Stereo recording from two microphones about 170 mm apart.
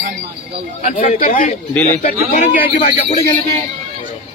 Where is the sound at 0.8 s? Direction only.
55° left (ahead or behind).